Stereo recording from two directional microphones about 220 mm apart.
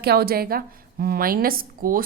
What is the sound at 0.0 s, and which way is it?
A woman's voice, 45° right (ahead or behind).